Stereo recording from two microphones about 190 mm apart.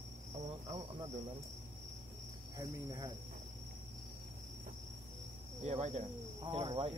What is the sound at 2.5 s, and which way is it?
Speech, 20° right (ahead or behind).